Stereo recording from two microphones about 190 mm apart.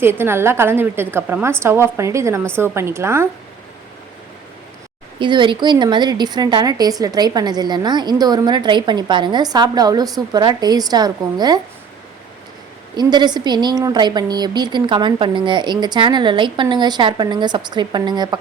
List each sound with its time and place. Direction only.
0.0 s a woman's voice: 10° right (ahead or behind)
5.2 s a woman's voice: 25° right (ahead or behind)
13.0 s a woman's voice: 20° right (ahead or behind)